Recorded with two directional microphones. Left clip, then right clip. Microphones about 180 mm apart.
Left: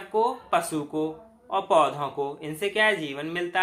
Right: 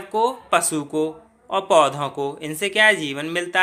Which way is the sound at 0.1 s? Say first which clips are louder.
Right 4 dB; 40° right (ahead or behind).